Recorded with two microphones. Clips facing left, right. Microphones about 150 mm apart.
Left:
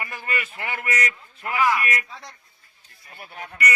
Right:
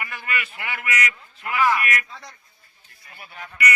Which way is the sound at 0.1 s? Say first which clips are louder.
Even; 40° left (ahead or behind).